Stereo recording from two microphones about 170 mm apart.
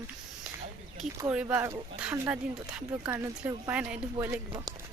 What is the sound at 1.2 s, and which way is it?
Speech, 10° right (ahead or behind).